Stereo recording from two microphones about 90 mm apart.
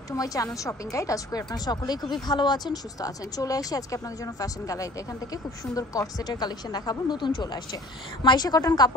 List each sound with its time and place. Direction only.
0.1 s speech: 40° left (ahead or behind)